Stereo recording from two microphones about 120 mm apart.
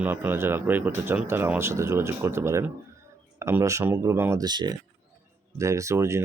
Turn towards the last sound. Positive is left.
turn(degrees=-25)  # may be behind; listen again after turning